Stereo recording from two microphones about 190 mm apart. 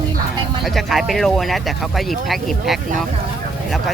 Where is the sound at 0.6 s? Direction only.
Centre (ahead or behind).